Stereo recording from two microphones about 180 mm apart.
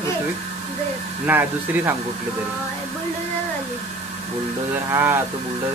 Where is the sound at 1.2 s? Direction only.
10° right (ahead or behind).